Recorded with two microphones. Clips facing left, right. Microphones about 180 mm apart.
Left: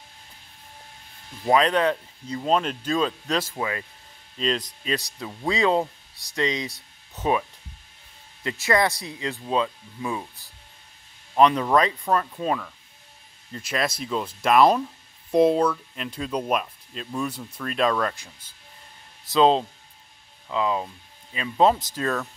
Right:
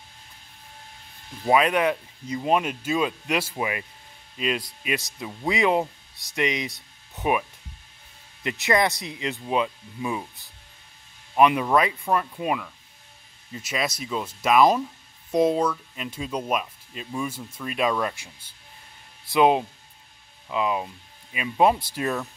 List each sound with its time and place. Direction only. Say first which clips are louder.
1.5 s speech: even; 10° right (ahead or behind)
8.5 s speech: even; 20° right (ahead or behind)
11.3 s speech: left 1 dB; 10° right (ahead or behind)